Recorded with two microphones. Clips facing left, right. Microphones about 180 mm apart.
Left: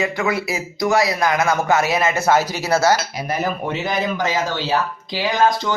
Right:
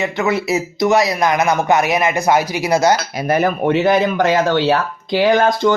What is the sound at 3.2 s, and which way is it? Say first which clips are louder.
Speech: right 9 dB; 60° right (ahead or behind).